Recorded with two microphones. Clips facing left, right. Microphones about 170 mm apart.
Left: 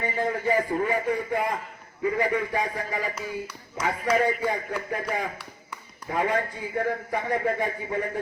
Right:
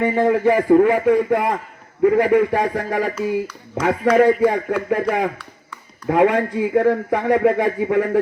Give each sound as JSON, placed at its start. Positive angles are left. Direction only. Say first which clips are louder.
{"t": 0.0, "sound": "a man's voice", "louder": "right 11 dB", "side_deg": -70}